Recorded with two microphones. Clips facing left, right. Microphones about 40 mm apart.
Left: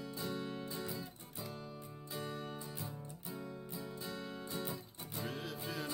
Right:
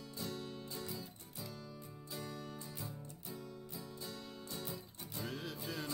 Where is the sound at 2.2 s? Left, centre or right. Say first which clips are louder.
Left 4 dB; left.